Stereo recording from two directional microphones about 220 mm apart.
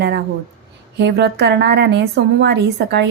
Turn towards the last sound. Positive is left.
turn(degrees=-50)  # may be behind; listen again after turning